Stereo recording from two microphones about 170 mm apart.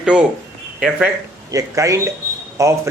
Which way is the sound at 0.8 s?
5° right (ahead or behind).